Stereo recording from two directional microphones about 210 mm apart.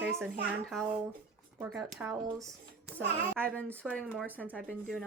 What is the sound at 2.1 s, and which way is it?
Speech, 15° right (ahead or behind).